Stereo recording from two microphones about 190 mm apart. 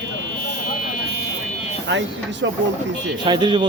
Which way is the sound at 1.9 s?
70° right (ahead or behind).